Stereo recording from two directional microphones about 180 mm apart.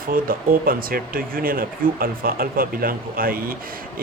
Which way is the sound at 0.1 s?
50° right (ahead or behind).